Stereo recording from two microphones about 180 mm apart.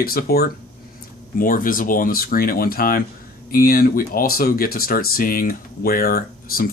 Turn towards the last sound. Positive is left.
turn(degrees=55)  # may be behind; listen again after turning